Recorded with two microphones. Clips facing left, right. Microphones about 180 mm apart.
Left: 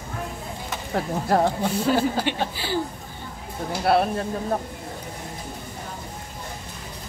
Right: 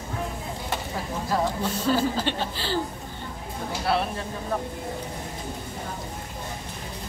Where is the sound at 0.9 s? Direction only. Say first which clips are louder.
Left 7 dB; 60° left (ahead or behind).